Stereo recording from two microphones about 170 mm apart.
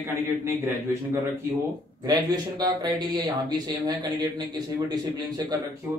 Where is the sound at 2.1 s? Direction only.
20° right (ahead or behind).